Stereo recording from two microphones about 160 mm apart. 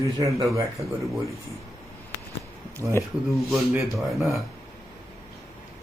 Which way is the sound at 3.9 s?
Centre (ahead or behind).